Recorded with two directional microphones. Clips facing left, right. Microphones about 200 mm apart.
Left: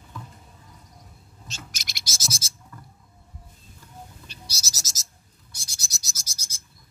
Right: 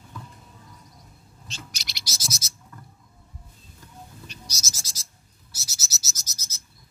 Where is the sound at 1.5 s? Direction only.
50° left (ahead or behind).